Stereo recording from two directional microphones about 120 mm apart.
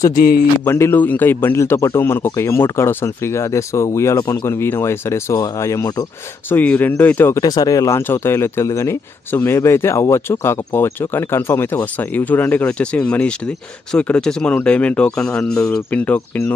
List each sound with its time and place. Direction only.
0.7 s speech: 20° left (ahead or behind)
6.5 s speech: 15° left (ahead or behind)
7.4 s speech: 30° left (ahead or behind); by 16.5 s 15° left (ahead or behind)